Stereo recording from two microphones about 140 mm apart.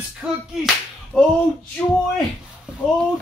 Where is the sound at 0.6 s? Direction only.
5° left (ahead or behind).